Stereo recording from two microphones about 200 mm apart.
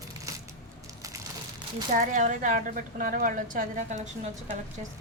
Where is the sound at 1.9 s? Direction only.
40° right (ahead or behind).